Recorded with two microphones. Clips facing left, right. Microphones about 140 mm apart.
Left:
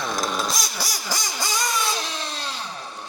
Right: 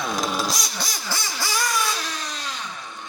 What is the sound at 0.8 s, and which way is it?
Vehicle, 10° left (ahead or behind).